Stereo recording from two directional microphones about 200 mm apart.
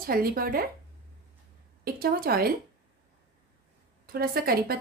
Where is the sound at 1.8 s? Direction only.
45° right (ahead or behind).